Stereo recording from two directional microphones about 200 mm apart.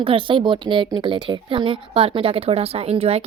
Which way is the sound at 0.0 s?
25° right (ahead or behind).